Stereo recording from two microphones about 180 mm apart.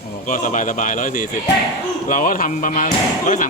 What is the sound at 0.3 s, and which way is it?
Speech, 45° left (ahead or behind).